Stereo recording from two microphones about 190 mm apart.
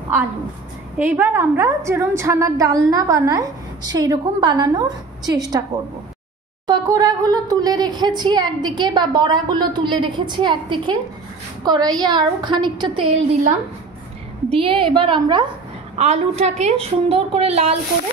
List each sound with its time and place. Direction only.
0.9 s a woman's voice: 10° right (ahead or behind)
6.7 s a woman's voice: 20° right (ahead or behind)
14.5 s a woman's voice: 30° right (ahead or behind)
16.0 s a woman's voice: 35° right (ahead or behind)